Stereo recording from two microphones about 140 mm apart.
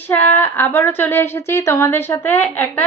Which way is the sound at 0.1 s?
15° left (ahead or behind).